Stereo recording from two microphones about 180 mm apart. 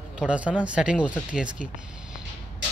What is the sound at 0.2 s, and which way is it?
Speech, 5° right (ahead or behind).